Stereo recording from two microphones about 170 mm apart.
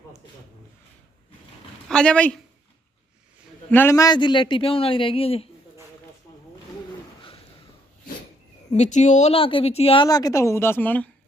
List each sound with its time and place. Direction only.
1.9 s speech: 5° left (ahead or behind)
3.7 s a man's voice: 15° left (ahead or behind); by 5.5 s 35° left (ahead or behind)
8.7 s a woman's voice: 45° left (ahead or behind); by 11.1 s 10° left (ahead or behind)